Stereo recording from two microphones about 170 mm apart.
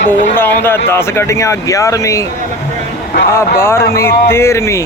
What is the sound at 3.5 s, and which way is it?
Speech, 15° left (ahead or behind).